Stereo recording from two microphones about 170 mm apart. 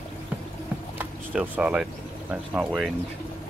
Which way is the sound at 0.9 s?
10° right (ahead or behind).